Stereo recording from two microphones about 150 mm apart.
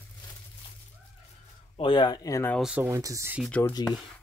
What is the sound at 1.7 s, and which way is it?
Speech, 30° left (ahead or behind).